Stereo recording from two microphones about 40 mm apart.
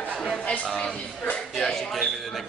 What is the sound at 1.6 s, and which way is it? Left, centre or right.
Speech, centre.